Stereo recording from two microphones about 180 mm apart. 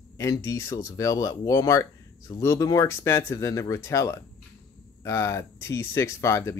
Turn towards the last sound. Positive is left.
turn(degrees=15)  # may be behind; listen again after turning